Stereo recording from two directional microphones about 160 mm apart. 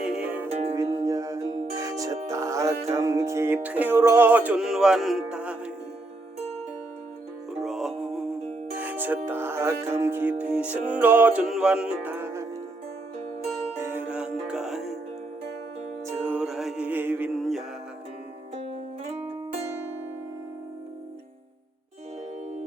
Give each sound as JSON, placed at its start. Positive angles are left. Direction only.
{"t": 0.0, "sound": "music", "side_deg": -5}
{"t": 0.4, "sound": "music", "side_deg": -40}
{"t": 0.8, "sound": "music", "side_deg": -20}
{"t": 7.6, "sound": "music", "side_deg": 0}
{"t": 13.9, "sound": "music", "side_deg": -10}
{"t": 16.0, "sound": "music", "side_deg": -10}
{"t": 18.6, "sound": "music", "side_deg": -40}